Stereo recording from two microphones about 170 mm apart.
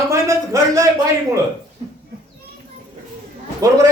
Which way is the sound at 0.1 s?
20° right (ahead or behind).